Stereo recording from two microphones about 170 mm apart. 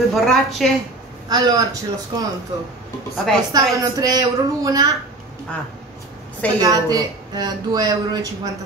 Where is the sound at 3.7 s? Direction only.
20° right (ahead or behind).